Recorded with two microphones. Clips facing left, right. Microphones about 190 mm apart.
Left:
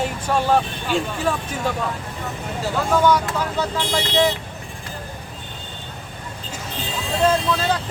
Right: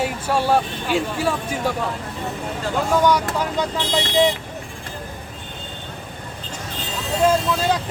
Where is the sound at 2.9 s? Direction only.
15° right (ahead or behind).